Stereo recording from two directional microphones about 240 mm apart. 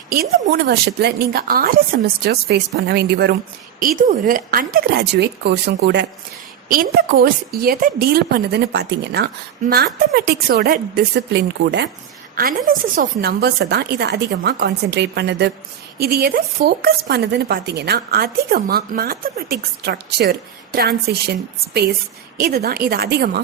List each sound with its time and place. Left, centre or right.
0.1 s a woman's voice: right